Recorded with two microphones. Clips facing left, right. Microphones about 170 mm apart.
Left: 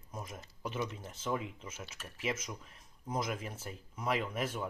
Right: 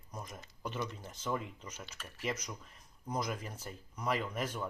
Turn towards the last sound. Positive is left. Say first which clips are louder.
# left 1 dB
turn(degrees=5)  # may be behind; listen again after turning